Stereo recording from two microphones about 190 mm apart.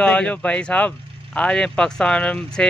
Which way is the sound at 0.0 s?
5° left (ahead or behind).